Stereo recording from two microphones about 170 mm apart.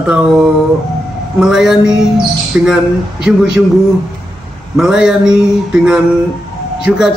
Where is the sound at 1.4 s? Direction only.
Centre (ahead or behind).